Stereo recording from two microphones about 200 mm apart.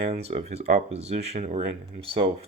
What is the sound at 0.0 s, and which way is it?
Speech, 30° right (ahead or behind).